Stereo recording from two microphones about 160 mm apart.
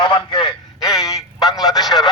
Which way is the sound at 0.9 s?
20° left (ahead or behind).